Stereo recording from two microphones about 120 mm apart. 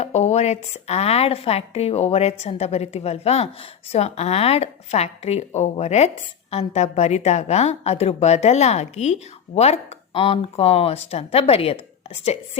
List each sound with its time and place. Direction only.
0.0 s a woman's voice: 65° left (ahead or behind)